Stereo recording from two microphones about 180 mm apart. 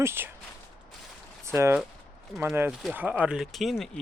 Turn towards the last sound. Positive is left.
turn(degrees=0)  # may be behind; listen again after turning